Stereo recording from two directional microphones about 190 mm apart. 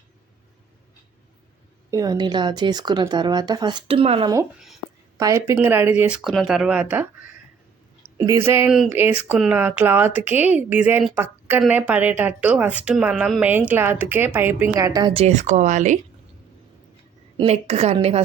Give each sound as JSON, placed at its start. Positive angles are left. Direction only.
{"t": 1.9, "sound": "speech", "side_deg": -20}
{"t": 5.1, "sound": "speech", "side_deg": -15}
{"t": 17.3, "sound": "a woman's voice", "side_deg": -35}